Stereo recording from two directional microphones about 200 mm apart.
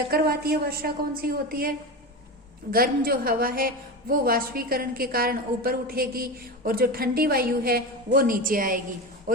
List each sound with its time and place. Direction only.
0.1 s a woman's voice: 50° right (ahead or behind)
2.7 s a woman's voice: 45° right (ahead or behind)